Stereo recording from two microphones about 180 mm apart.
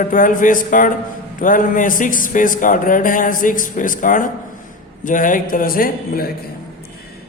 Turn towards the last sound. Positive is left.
turn(degrees=55)  # may be behind; listen again after turning